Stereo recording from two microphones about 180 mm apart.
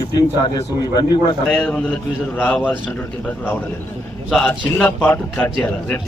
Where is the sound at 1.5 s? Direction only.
5° left (ahead or behind).